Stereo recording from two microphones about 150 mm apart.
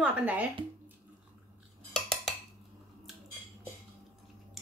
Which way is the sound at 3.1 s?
Centre (ahead or behind).